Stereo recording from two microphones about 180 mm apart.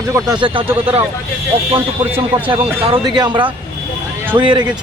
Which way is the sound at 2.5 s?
25° right (ahead or behind).